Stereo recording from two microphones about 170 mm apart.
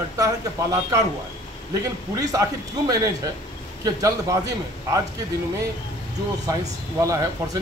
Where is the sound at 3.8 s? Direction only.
20° right (ahead or behind).